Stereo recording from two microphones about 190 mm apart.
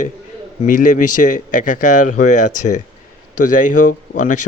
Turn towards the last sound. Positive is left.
turn(degrees=40)  # may be behind; listen again after turning